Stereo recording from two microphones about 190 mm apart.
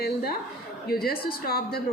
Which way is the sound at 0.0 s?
55° left (ahead or behind).